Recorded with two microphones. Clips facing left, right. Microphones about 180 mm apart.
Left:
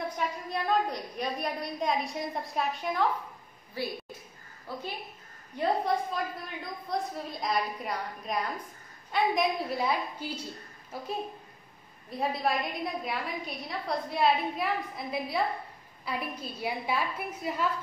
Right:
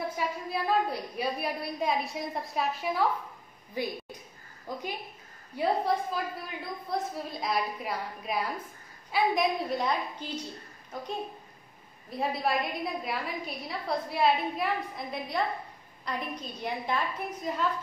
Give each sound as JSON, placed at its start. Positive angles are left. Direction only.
{"t": 0.1, "sound": "a woman's voice", "side_deg": -5}
{"t": 3.7, "sound": "a woman's voice", "side_deg": -15}